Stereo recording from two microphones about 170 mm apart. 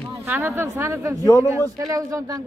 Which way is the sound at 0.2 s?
15° right (ahead or behind).